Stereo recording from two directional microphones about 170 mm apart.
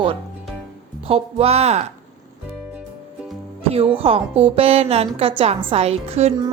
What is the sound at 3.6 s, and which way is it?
Speech, 35° right (ahead or behind).